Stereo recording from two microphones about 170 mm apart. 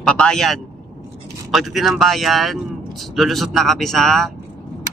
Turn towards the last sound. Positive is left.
turn(degrees=0)  # may be behind; listen again after turning